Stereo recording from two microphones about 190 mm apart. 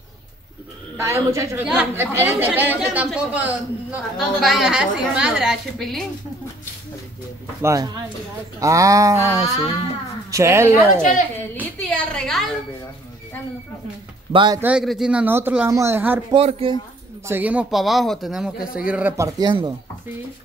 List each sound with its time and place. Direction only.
0.9 s a woman's voice: 15° right (ahead or behind); by 6.0 s centre (ahead or behind)
7.6 s speech: 20° right (ahead or behind)
11.6 s a sound: 5° left (ahead or behind)
14.3 s speech: 25° right (ahead or behind)
14.6 s speech: 5° right (ahead or behind)
16.3 s speech: 30° right (ahead or behind)
17.3 s speech: 10° right (ahead or behind)